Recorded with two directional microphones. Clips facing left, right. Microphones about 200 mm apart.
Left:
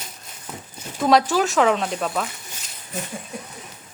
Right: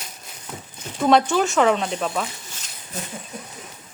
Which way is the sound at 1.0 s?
Centre (ahead or behind).